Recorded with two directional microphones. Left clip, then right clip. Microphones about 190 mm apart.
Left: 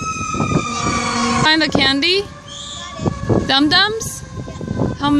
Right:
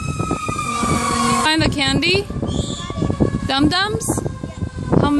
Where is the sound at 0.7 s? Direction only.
5° left (ahead or behind).